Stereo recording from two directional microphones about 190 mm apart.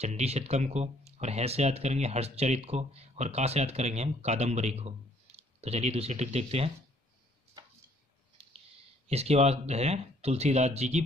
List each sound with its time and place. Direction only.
0.0 s speech: 35° right (ahead or behind)
8.4 s a sound: 35° right (ahead or behind)
9.1 s speech: 35° right (ahead or behind)